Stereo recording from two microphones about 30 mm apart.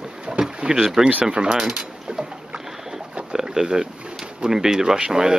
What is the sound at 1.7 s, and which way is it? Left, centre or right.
Boat, right.